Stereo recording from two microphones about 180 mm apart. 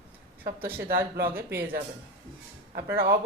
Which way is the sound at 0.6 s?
10° right (ahead or behind).